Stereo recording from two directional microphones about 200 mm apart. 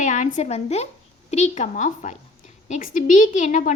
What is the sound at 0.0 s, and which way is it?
A woman's voice, 40° left (ahead or behind).